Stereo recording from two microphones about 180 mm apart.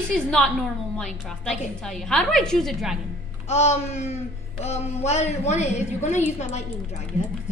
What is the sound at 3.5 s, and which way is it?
A woman's voice, 40° left (ahead or behind).